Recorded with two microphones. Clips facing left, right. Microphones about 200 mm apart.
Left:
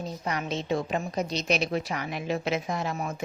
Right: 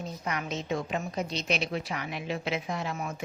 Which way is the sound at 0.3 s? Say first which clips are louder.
Left 3 dB; 35° left (ahead or behind).